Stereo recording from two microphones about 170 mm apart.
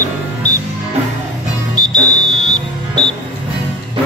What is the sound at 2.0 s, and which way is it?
Music, 45° left (ahead or behind).